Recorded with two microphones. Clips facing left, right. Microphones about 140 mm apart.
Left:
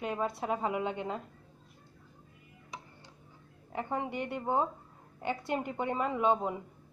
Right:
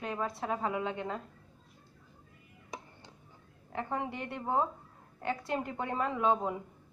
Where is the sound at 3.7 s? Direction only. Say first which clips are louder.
Left 1 dB; 5° left (ahead or behind).